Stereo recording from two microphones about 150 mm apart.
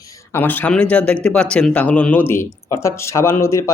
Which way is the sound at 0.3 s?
15° left (ahead or behind).